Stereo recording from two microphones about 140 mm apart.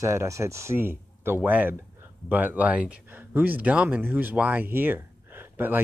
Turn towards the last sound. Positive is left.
turn(degrees=-15)  # may be behind; listen again after turning